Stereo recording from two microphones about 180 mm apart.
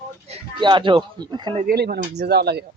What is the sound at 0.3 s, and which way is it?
Speech, 30° right (ahead or behind).